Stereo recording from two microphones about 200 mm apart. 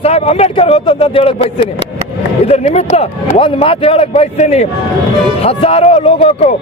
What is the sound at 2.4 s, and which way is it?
Speech, 30° left (ahead or behind).